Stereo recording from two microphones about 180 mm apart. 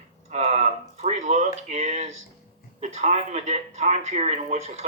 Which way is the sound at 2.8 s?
35° right (ahead or behind).